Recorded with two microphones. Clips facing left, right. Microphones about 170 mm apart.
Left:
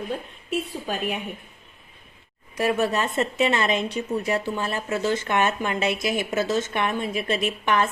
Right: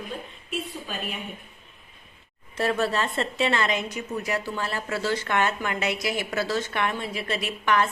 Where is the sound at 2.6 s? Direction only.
15° left (ahead or behind).